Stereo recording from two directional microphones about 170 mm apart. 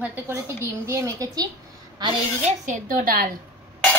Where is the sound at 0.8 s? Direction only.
15° right (ahead or behind).